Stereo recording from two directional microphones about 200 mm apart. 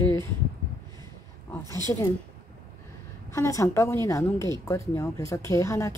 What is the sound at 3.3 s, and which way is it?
A woman's voice, 15° left (ahead or behind).